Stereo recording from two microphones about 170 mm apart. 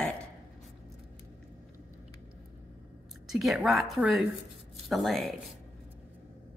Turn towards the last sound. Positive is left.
turn(degrees=0)  # may be behind; listen again after turning